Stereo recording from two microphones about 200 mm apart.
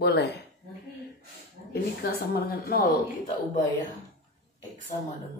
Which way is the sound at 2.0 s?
50° left (ahead or behind).